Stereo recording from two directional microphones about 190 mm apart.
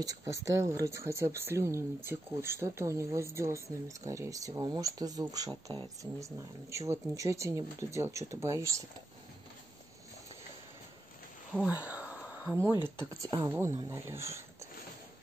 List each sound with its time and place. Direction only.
0.0 s speech: 20° right (ahead or behind)
11.6 s speech: 5° right (ahead or behind)